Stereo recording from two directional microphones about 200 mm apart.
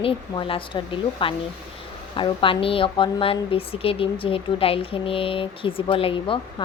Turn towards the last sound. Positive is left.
turn(degrees=25)  # may be behind; listen again after turning